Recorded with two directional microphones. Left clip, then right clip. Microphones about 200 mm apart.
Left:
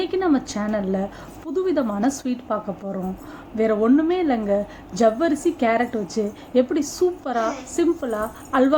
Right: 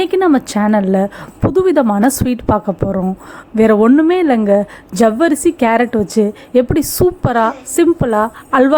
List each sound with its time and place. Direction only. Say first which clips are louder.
0.0 s a woman's voice: right 9 dB; 50° right (ahead or behind)